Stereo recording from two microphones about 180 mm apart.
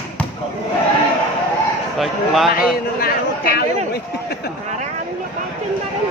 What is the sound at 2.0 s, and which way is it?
Speech, centre (ahead or behind).